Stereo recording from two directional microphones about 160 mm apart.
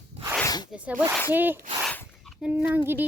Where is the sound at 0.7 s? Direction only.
10° right (ahead or behind).